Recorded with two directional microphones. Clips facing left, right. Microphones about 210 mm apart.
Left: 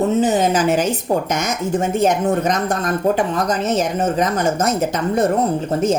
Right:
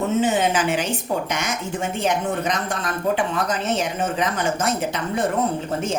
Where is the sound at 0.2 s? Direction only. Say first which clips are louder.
Left 4 dB; 40° left (ahead or behind).